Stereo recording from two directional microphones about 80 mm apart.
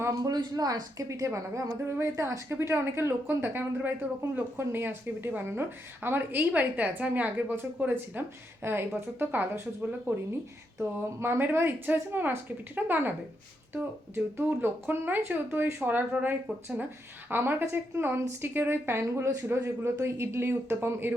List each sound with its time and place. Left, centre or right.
0.2 s a woman's voice: right
14.3 s a woman's voice: right